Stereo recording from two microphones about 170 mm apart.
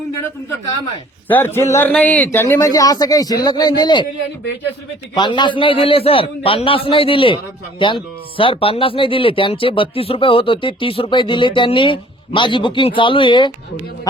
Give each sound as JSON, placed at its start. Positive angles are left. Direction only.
{"t": 1.3, "sound": "speech", "side_deg": 10}
{"t": 5.1, "sound": "a man's voice", "side_deg": 25}